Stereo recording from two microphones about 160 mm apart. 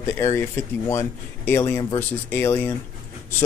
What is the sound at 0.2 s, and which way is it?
Speech, 15° left (ahead or behind).